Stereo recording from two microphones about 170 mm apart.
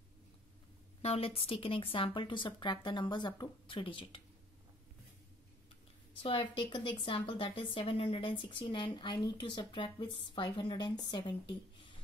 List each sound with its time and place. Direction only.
1.0 s a woman's voice: 35° left (ahead or behind)
6.1 s a woman's voice: 30° left (ahead or behind)